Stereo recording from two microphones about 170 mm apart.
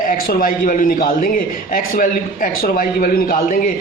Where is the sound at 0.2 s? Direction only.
60° left (ahead or behind).